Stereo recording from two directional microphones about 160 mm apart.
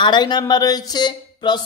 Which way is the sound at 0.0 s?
25° left (ahead or behind).